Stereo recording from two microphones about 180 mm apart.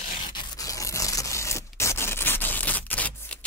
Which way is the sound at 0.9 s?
20° left (ahead or behind).